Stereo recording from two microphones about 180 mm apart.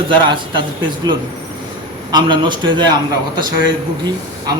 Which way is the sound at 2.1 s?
25° right (ahead or behind).